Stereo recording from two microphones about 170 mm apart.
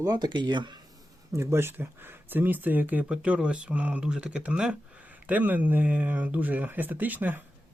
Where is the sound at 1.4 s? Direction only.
15° right (ahead or behind).